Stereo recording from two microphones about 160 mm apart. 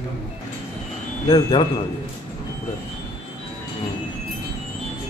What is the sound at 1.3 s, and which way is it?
Speech, 30° left (ahead or behind).